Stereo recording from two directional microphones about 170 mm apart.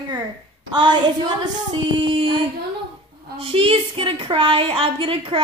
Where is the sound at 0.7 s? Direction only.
25° right (ahead or behind).